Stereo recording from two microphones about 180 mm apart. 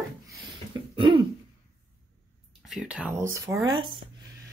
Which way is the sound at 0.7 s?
25° right (ahead or behind).